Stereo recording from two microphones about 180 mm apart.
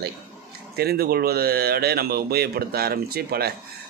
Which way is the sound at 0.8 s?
60° right (ahead or behind).